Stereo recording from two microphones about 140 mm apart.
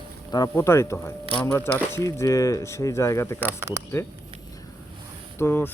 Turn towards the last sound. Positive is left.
turn(degrees=15)  # may be behind; listen again after turning